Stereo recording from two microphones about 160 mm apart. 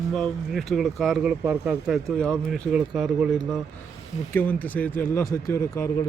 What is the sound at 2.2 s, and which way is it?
Speech, 5° left (ahead or behind).